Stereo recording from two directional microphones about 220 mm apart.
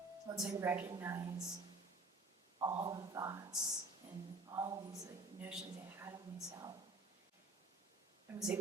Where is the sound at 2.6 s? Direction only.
20° right (ahead or behind).